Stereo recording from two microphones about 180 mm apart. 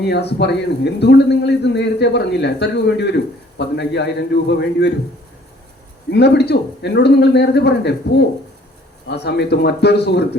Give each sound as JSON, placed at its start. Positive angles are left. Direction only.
{"t": 0.0, "sound": "a man's voice", "side_deg": 65}
{"t": 6.1, "sound": "a man's voice", "side_deg": 70}
{"t": 9.0, "sound": "a man's voice", "side_deg": 70}